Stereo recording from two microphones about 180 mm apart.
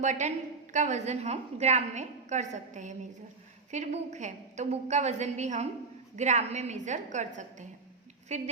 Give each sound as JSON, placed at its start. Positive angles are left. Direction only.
{"t": 0.0, "sound": "a woman's voice", "side_deg": -40}